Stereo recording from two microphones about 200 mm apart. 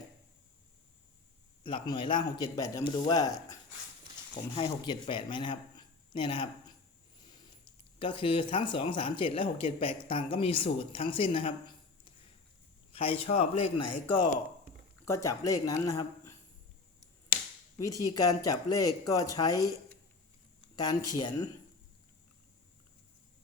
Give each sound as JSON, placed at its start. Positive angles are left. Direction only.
{"t": 1.6, "sound": "speech", "side_deg": 25}
{"t": 4.5, "sound": "speech", "side_deg": 20}
{"t": 7.9, "sound": "speech", "side_deg": 25}
{"t": 15.0, "sound": "speech", "side_deg": 15}
{"t": 17.7, "sound": "speech", "side_deg": 15}
{"t": 19.5, "sound": "speech", "side_deg": -15}
{"t": 20.7, "sound": "speech", "side_deg": 20}